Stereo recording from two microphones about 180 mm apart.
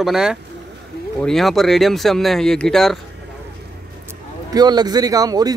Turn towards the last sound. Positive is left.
turn(degrees=-20)  # may be behind; listen again after turning